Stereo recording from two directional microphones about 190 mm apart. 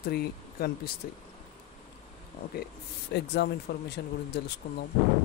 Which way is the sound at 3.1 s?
60° left (ahead or behind).